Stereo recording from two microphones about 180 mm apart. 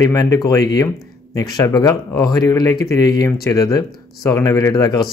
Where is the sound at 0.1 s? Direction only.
20° left (ahead or behind).